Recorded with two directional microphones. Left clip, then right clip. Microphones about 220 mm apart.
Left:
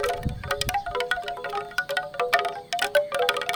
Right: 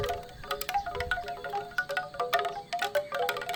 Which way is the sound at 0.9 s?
40° left (ahead or behind).